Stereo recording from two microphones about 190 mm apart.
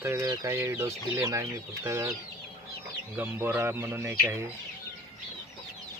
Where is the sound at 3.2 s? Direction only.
10° right (ahead or behind).